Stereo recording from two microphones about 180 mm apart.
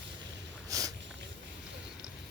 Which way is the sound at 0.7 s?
20° right (ahead or behind).